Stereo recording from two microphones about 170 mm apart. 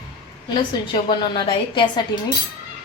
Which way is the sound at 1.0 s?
30° left (ahead or behind).